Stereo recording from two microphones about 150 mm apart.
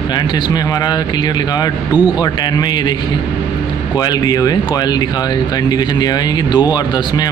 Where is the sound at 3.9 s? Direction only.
25° left (ahead or behind).